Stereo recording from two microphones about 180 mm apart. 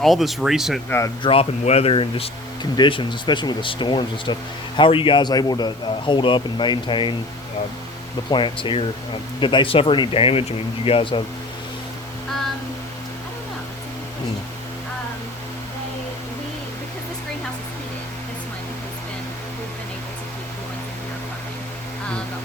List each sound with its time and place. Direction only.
0.0 s speech: centre (ahead or behind)
0.9 s speech: 15° left (ahead or behind)
1.2 s a man's voice: 30° left (ahead or behind)
8.3 s a man's voice: 25° left (ahead or behind)